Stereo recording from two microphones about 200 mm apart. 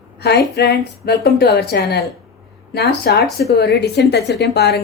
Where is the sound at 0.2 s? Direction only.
55° left (ahead or behind).